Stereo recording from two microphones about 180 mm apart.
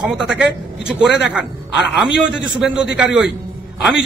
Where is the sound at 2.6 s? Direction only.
5° right (ahead or behind).